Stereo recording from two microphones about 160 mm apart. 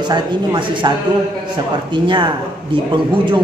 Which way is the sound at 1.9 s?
30° right (ahead or behind).